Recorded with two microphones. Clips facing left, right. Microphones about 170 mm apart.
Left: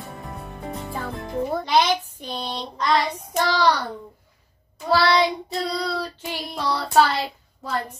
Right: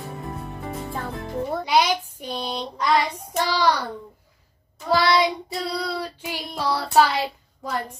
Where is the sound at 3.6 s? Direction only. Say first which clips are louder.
Even; 10° right (ahead or behind).